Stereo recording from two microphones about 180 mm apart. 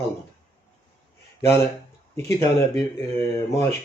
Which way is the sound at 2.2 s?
15° left (ahead or behind).